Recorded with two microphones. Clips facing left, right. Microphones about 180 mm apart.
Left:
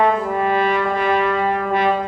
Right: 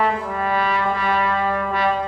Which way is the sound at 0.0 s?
25° left (ahead or behind).